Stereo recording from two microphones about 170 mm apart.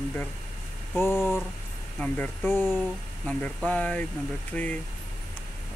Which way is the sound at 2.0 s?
10° left (ahead or behind).